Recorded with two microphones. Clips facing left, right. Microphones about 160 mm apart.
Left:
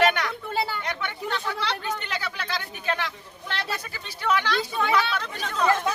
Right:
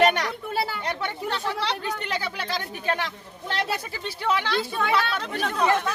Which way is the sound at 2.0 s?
35° right (ahead or behind).